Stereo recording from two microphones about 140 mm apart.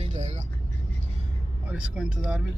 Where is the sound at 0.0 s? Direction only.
55° right (ahead or behind).